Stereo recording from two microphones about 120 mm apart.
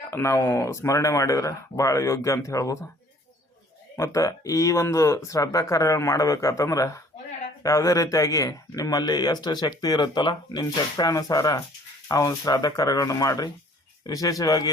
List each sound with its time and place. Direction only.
0.1 s speech: 20° left (ahead or behind)
3.9 s a man's voice: 25° left (ahead or behind)